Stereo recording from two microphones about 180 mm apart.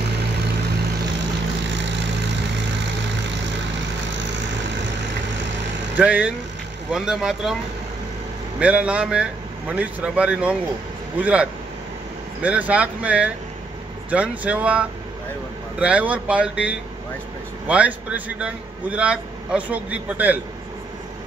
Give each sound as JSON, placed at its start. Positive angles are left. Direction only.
{"t": 4.1, "sound": "vehicle", "side_deg": -80}
{"t": 5.9, "sound": "a man's voice", "side_deg": -5}
{"t": 8.5, "sound": "a man's voice", "side_deg": -5}